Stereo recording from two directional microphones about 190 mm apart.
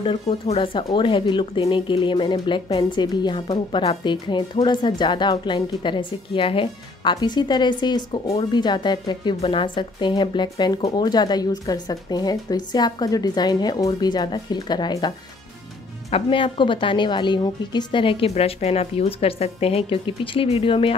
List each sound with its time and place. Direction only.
0.0 s speech: 30° left (ahead or behind)